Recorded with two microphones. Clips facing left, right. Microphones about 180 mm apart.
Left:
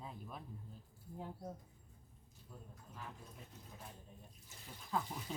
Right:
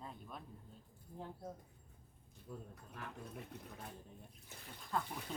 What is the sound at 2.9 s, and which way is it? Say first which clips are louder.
Speech: right 4 dB; 65° right (ahead or behind).